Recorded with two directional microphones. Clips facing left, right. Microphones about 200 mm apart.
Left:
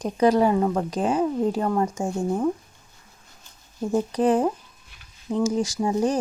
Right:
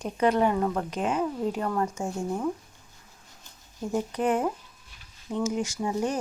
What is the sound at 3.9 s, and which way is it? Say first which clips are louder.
Speech: left 5 dB; 35° left (ahead or behind).